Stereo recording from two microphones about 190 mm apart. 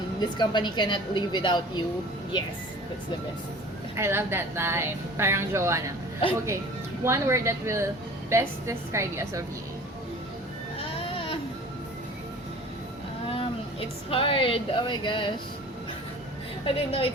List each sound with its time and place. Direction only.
0.2 s a woman's voice: 25° left (ahead or behind)
3.9 s speech: 15° right (ahead or behind)
7.0 s speech: 15° right (ahead or behind)
13.3 s a sound: 30° left (ahead or behind)
14.1 s a woman's voice: 30° left (ahead or behind)
16.6 s a woman's voice: 30° left (ahead or behind)